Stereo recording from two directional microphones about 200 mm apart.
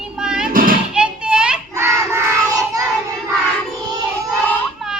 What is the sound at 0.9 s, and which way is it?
Child singing, 5° right (ahead or behind).